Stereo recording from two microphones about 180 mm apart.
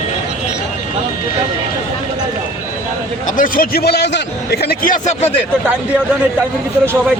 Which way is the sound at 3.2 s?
50° left (ahead or behind).